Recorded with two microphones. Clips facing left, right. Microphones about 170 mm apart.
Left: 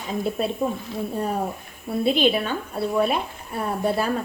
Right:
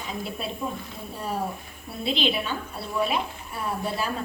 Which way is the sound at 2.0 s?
50° left (ahead or behind).